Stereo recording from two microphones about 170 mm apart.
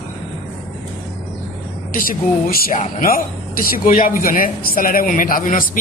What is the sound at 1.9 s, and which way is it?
Speech, 55° left (ahead or behind).